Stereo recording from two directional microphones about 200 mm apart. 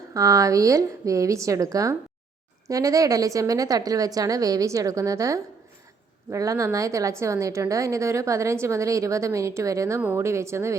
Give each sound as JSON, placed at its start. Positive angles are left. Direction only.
{"t": 0.1, "sound": "a woman's voice", "side_deg": -15}